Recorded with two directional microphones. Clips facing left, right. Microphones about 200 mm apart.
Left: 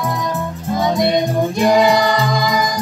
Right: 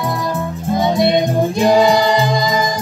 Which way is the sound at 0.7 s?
25° right (ahead or behind).